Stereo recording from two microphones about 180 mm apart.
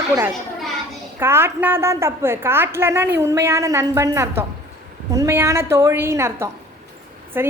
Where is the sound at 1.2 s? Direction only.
15° right (ahead or behind).